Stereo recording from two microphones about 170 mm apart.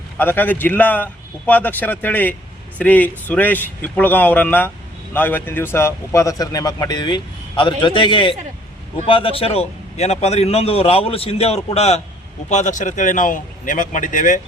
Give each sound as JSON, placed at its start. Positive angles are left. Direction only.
{"t": 0.2, "sound": "a man's voice", "side_deg": 10}